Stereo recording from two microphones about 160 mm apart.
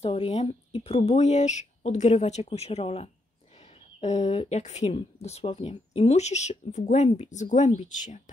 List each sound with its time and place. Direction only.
0.0 s speech: 40° left (ahead or behind)